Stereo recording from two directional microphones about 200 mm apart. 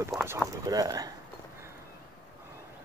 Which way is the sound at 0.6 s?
15° right (ahead or behind).